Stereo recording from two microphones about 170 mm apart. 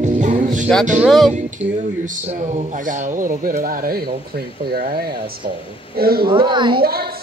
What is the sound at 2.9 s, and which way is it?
Speech, 50° right (ahead or behind).